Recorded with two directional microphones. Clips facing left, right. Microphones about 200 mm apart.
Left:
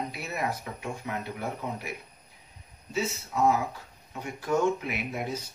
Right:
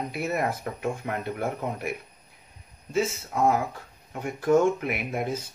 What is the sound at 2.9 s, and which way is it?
Speech, 50° right (ahead or behind).